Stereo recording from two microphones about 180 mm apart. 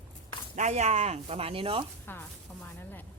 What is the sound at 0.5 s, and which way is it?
Speech, 40° right (ahead or behind).